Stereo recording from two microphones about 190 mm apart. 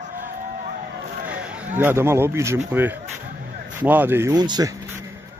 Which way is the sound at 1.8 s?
10° right (ahead or behind).